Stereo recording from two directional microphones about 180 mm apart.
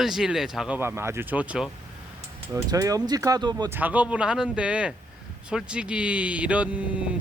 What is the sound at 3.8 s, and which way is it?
Speech, 10° right (ahead or behind).